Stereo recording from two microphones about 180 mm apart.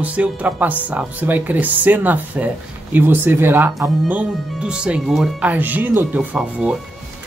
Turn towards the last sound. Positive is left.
turn(degrees=-5)  # may be behind; listen again after turning